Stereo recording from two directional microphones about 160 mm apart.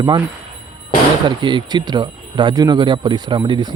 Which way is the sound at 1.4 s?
30° right (ahead or behind).